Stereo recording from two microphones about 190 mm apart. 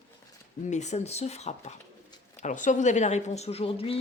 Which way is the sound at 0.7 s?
35° left (ahead or behind).